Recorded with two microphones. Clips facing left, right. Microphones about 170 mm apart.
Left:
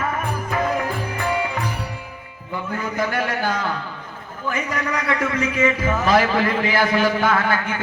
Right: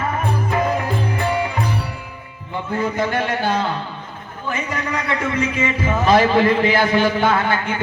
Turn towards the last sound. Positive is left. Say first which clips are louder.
# right 1 dB
turn(degrees=-25)  # may be behind; listen again after turning